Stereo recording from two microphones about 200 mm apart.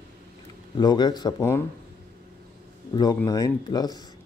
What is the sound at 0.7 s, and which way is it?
Speech, 20° left (ahead or behind).